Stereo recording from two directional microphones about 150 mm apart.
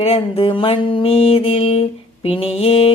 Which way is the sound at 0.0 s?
40° left (ahead or behind).